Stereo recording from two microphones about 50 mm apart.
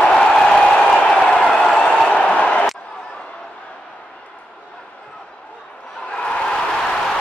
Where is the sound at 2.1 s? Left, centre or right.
Left.